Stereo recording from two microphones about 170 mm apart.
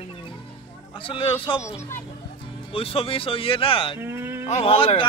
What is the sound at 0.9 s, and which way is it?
Speech, 30° left (ahead or behind).